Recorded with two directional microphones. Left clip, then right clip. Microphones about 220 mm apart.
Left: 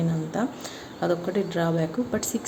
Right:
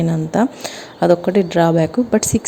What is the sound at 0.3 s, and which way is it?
A woman's voice, 35° right (ahead or behind).